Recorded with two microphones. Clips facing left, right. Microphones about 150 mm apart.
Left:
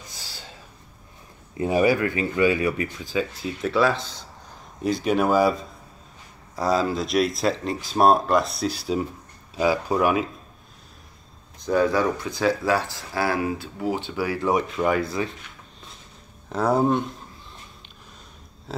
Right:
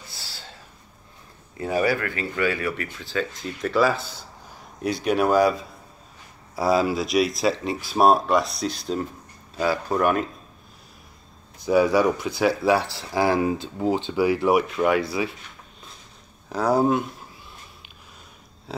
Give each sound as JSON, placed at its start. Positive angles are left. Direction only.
{"t": 0.0, "sound": "gasp", "side_deg": 15}
{"t": 1.6, "sound": "speech", "side_deg": 15}
{"t": 11.6, "sound": "speech", "side_deg": -10}
{"t": 14.8, "sound": "speech", "side_deg": -5}
{"t": 16.4, "sound": "speech", "side_deg": 0}
{"t": 18.7, "sound": "a sound", "side_deg": 0}